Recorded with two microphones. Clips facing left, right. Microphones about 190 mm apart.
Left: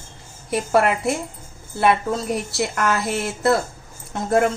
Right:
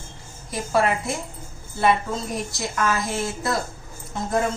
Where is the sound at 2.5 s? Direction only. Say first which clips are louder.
Left 1 dB; 70° left (ahead or behind).